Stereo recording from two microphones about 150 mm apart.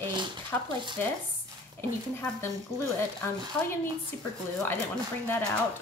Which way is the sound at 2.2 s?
15° left (ahead or behind).